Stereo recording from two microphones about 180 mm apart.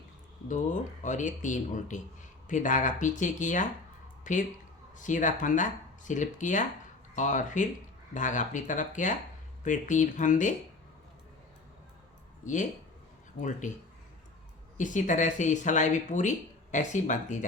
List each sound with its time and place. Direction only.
0.4 s a woman's voice: 45° left (ahead or behind)
13.6 s speech: 45° left (ahead or behind)